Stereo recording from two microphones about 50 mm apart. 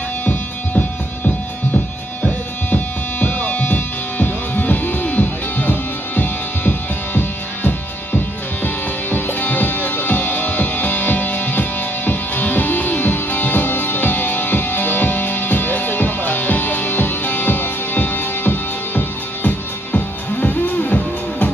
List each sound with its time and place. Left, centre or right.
0.2 s music: left
3.2 s music: left